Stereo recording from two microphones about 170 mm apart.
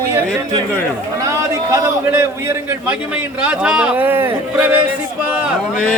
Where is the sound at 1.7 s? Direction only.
15° right (ahead or behind).